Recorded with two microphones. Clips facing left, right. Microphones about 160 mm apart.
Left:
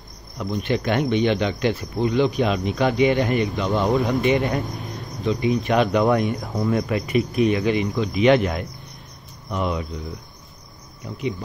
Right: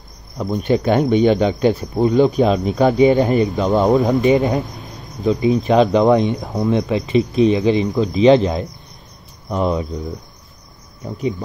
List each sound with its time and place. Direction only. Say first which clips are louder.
0.4 s speech: right 6 dB; 40° right (ahead or behind)